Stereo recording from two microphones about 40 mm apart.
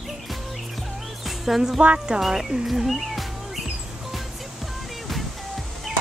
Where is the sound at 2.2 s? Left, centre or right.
Centre.